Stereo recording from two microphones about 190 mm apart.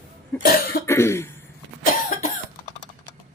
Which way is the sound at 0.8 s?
15° left (ahead or behind).